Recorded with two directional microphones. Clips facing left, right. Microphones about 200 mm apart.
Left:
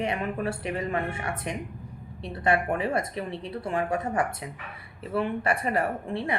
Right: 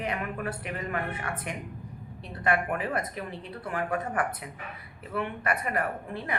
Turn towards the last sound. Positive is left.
turn(degrees=30)  # may be behind; listen again after turning